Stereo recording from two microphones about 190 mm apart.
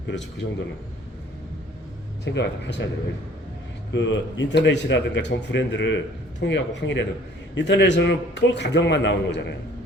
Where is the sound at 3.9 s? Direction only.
75° left (ahead or behind).